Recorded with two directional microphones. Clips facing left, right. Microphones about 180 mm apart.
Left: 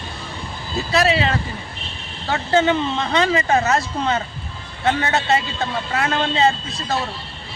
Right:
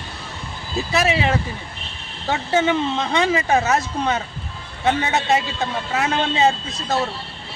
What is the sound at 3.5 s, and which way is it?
Speech, 5° right (ahead or behind).